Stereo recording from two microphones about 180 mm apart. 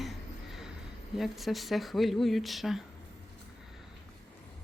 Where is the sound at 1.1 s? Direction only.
Centre (ahead or behind).